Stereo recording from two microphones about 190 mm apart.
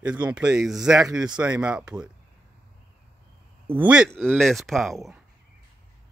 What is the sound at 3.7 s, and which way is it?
Speech, 5° right (ahead or behind).